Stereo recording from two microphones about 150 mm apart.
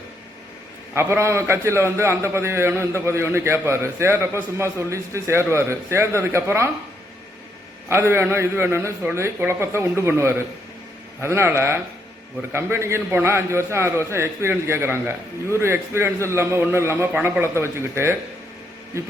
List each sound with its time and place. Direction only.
0.9 s a man's voice: 15° right (ahead or behind)
7.9 s a man's voice: 15° right (ahead or behind)